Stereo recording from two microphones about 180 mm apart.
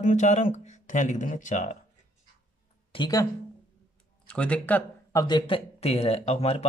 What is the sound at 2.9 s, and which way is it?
Speech, 25° left (ahead or behind).